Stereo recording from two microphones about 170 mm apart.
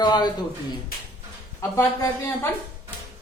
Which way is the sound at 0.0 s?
25° left (ahead or behind).